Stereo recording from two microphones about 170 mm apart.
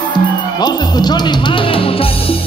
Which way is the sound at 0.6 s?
25° left (ahead or behind).